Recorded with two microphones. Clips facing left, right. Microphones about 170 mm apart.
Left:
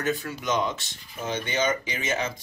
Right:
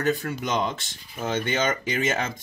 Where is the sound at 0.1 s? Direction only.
45° right (ahead or behind).